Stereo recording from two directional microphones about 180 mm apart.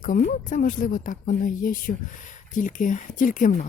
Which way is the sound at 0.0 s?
50° left (ahead or behind).